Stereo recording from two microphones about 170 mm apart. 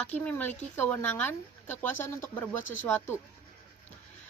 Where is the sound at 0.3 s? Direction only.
10° left (ahead or behind).